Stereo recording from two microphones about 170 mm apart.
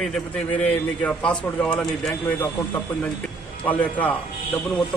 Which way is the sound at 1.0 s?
5° left (ahead or behind).